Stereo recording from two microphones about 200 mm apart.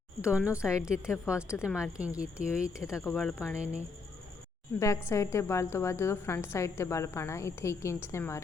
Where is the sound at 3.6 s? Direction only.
35° right (ahead or behind).